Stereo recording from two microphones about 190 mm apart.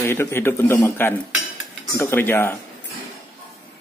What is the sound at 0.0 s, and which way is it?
Speech, 10° left (ahead or behind).